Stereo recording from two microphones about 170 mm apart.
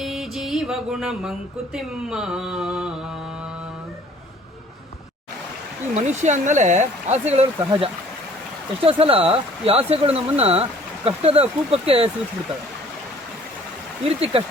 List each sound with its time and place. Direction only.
0.0 s music: centre (ahead or behind)
5.9 s speech: 45° right (ahead or behind)
14.1 s speech: 35° right (ahead or behind)